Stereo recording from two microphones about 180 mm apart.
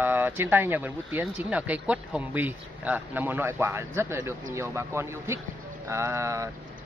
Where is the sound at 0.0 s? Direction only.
10° right (ahead or behind).